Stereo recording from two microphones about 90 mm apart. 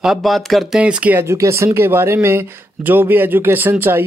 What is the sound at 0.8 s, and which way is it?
Speech, 15° right (ahead or behind).